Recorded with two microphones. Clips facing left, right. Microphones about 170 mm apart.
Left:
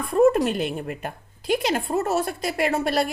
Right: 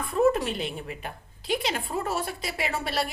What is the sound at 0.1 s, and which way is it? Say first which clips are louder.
A woman's voice: left 5 dB; 50° left (ahead or behind).